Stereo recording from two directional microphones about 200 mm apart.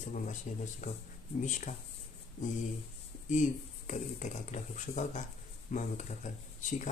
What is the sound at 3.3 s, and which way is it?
A man's voice, 40° left (ahead or behind).